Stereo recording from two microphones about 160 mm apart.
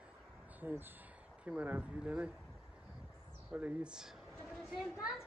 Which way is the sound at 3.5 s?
10° right (ahead or behind).